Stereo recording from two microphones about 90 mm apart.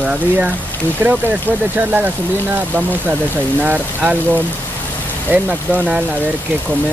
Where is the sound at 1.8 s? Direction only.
15° right (ahead or behind).